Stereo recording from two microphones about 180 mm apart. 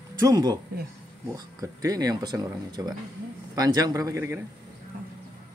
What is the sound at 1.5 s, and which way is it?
Speech, 20° right (ahead or behind).